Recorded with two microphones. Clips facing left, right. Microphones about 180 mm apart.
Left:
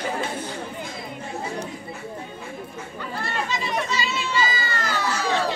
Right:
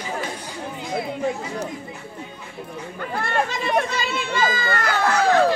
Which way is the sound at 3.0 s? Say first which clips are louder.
Right 6 dB; 55° right (ahead or behind).